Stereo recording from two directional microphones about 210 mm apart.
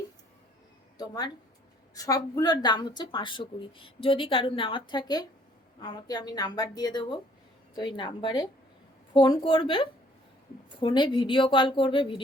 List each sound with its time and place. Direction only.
0.9 s speech: 20° left (ahead or behind)